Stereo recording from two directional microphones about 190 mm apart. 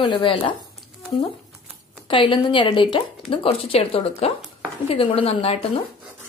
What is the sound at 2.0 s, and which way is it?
A woman's voice, 25° left (ahead or behind).